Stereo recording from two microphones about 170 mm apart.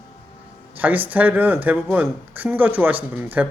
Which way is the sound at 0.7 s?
10° right (ahead or behind).